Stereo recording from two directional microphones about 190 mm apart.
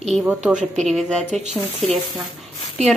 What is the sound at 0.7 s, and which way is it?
A woman's voice, centre (ahead or behind).